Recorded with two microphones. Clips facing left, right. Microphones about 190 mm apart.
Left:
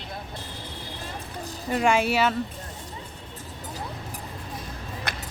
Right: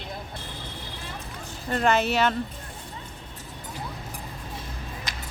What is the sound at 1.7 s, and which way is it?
Speech, 10° left (ahead or behind).